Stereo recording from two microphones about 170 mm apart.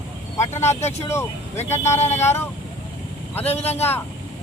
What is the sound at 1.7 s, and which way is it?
Speech, 15° left (ahead or behind).